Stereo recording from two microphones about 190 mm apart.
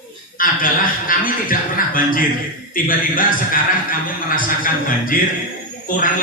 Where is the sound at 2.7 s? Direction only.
45° left (ahead or behind).